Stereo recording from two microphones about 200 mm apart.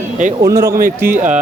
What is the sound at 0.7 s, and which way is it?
Speech, 45° right (ahead or behind).